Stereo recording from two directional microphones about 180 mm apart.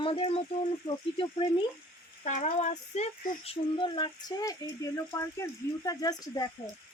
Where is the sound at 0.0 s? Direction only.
30° left (ahead or behind).